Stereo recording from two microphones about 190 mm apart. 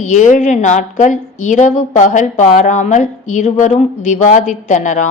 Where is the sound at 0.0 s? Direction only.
40° left (ahead or behind).